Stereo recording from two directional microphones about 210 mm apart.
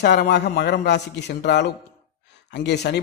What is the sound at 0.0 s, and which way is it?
A man's voice, 55° left (ahead or behind).